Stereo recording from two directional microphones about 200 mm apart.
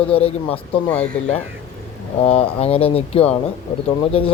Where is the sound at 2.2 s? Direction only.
30° left (ahead or behind).